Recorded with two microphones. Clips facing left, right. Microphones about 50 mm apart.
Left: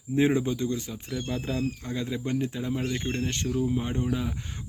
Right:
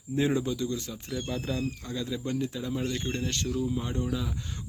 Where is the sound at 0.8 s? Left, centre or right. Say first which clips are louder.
Left 1 dB; centre.